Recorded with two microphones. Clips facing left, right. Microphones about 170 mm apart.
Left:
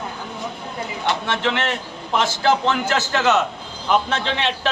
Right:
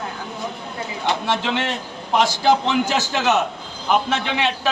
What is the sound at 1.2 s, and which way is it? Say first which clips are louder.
A man's voice: even; 15° right (ahead or behind).